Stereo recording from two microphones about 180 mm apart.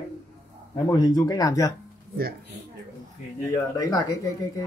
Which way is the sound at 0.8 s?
20° left (ahead or behind).